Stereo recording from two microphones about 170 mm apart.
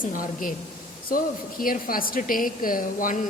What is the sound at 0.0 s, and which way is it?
A woman's voice, 55° left (ahead or behind).